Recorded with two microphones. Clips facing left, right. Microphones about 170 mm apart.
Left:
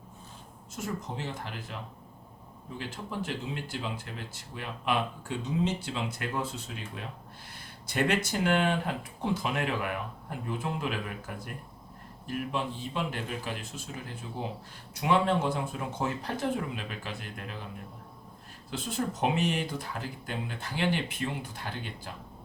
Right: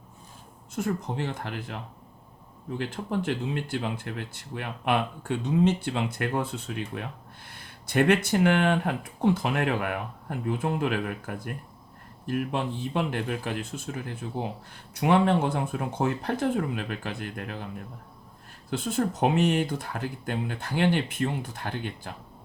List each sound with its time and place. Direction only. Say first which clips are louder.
0.8 s speech: right 7 dB; 60° right (ahead or behind)
18.7 s speech: right 5 dB; 55° right (ahead or behind)